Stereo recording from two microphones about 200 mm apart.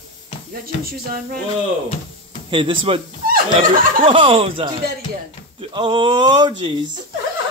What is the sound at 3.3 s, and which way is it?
Chuckle, 45° right (ahead or behind).